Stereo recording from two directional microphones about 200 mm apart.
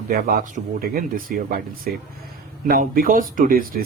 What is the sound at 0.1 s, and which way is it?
Speech, 45° right (ahead or behind).